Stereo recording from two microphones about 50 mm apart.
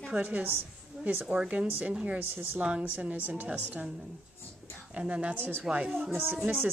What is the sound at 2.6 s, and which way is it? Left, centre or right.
Speech, right.